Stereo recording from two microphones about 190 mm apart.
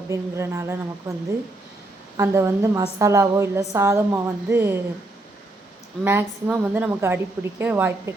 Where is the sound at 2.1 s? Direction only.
15° right (ahead or behind).